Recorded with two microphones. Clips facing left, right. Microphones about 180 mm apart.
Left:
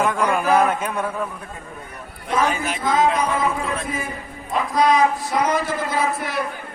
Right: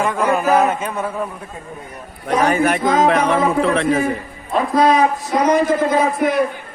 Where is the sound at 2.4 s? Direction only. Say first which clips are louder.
Right 7 dB; 60° right (ahead or behind).